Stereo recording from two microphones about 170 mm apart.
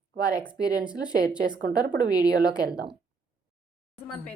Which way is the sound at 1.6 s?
60° right (ahead or behind).